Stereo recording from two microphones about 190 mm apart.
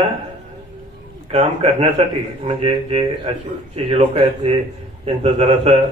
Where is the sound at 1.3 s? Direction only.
35° right (ahead or behind).